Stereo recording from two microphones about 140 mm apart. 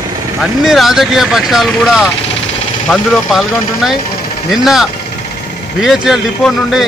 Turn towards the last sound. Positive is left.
turn(degrees=0)  # may be behind; listen again after turning